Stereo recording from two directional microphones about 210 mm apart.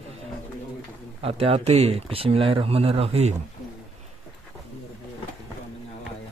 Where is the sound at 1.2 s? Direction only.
25° right (ahead or behind).